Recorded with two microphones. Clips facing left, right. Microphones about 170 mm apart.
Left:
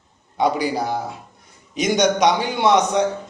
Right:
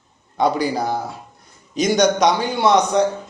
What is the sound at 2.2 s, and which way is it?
Speech, 10° left (ahead or behind).